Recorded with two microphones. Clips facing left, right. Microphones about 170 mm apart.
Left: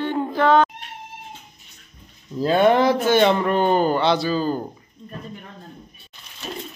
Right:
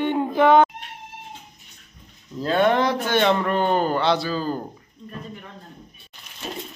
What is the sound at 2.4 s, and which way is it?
Speech, 5° left (ahead or behind).